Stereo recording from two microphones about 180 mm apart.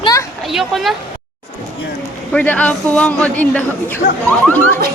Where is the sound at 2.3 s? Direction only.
5° left (ahead or behind).